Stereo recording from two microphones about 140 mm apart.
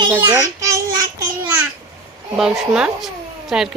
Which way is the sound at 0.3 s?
25° right (ahead or behind).